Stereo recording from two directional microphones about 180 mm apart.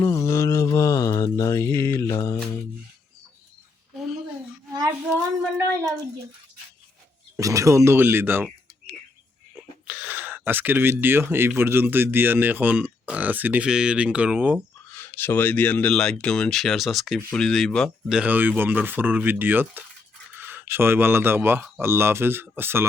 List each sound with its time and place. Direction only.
0.0 s mantra: 20° left (ahead or behind)
3.9 s a sound: centre (ahead or behind)
7.3 s speech: 15° right (ahead or behind)
9.8 s speech: 10° right (ahead or behind)
14.9 s speech: 10° left (ahead or behind); by 22.9 s 15° right (ahead or behind)